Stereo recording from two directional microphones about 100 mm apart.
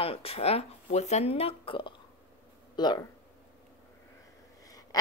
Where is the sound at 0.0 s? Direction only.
75° left (ahead or behind).